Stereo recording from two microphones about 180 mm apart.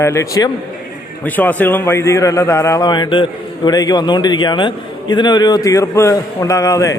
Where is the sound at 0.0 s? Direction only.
15° left (ahead or behind).